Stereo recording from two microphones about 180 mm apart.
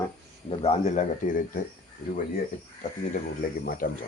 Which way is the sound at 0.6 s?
35° left (ahead or behind).